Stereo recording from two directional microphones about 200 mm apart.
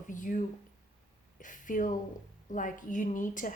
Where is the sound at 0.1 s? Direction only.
40° left (ahead or behind).